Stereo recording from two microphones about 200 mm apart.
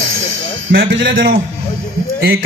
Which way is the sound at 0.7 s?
65° right (ahead or behind).